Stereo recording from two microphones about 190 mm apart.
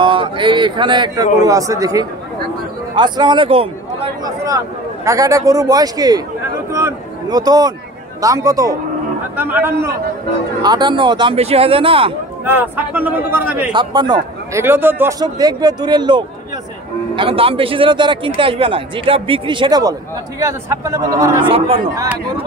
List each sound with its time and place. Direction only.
0.0 s a man's voice: 25° right (ahead or behind)
6.8 s a sound: 20° right (ahead or behind)
8.2 s a man's voice: 20° right (ahead or behind)
10.6 s a man's voice: 20° right (ahead or behind)
12.4 s a man's voice: 10° right (ahead or behind)
13.7 s a man's voice: 20° right (ahead or behind)
21.5 s a man's voice: 30° right (ahead or behind)
21.9 s a man's voice: 15° right (ahead or behind)